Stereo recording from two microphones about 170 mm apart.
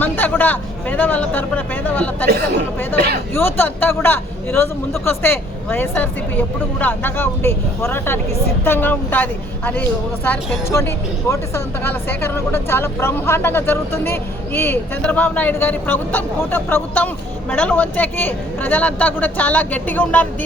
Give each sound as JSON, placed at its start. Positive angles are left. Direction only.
{"t": 0.0, "sound": "speech", "side_deg": 10}
{"t": 2.3, "sound": "speech", "side_deg": -65}
{"t": 3.3, "sound": "speech", "side_deg": 10}